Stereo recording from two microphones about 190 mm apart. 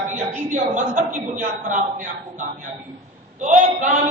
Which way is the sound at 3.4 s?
40° right (ahead or behind).